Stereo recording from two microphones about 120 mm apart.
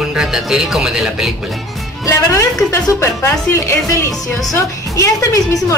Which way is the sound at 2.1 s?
25° left (ahead or behind).